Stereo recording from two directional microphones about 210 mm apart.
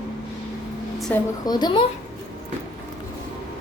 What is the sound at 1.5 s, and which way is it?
Speech, 20° left (ahead or behind).